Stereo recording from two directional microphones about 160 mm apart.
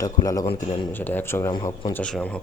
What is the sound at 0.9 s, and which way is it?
Speech, 10° left (ahead or behind).